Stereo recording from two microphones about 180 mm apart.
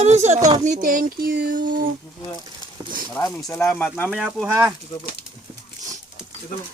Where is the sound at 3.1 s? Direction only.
10° left (ahead or behind).